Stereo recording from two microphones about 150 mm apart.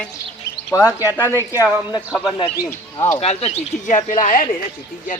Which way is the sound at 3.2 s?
45° left (ahead or behind).